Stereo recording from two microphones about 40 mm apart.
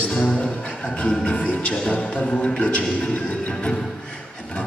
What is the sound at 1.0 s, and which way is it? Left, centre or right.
Music, left.